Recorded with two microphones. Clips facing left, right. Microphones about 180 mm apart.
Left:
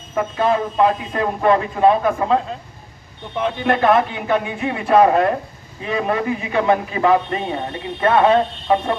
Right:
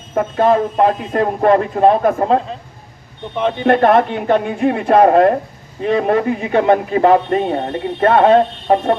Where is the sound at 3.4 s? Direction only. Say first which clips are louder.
Right 4 dB; 55° right (ahead or behind).